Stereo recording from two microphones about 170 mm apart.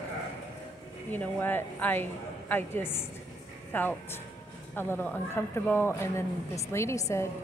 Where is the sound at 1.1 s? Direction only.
10° left (ahead or behind).